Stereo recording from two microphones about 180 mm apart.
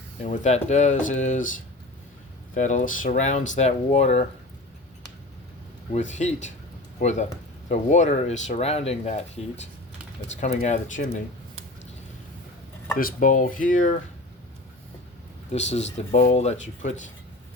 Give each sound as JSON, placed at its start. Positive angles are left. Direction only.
{"t": 0.2, "sound": "speech", "side_deg": 40}
{"t": 2.6, "sound": "speech", "side_deg": 45}
{"t": 5.9, "sound": "speech", "side_deg": 40}
{"t": 13.0, "sound": "speech", "side_deg": 50}
{"t": 15.5, "sound": "speech", "side_deg": 35}